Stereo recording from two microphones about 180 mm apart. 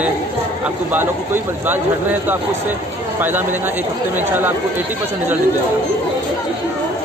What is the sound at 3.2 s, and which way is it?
Speech, 10° right (ahead or behind).